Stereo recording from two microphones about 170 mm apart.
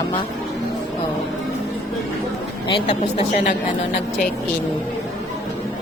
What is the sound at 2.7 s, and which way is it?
Speech, 35° left (ahead or behind).